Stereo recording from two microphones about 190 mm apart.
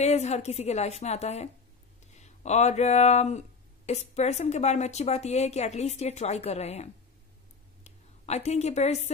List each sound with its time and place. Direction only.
0.0 s a woman's voice: 35° left (ahead or behind)